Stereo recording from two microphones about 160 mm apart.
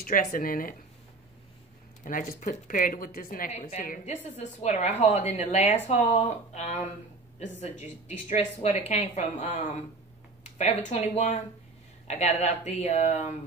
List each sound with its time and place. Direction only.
0.0 s speech: 65° left (ahead or behind)
2.0 s speech: 55° left (ahead or behind)